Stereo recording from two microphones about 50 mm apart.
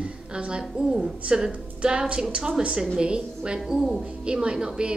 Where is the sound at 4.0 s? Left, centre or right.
Centre.